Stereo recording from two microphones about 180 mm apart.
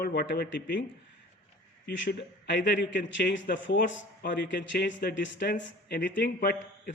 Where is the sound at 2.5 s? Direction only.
75° left (ahead or behind).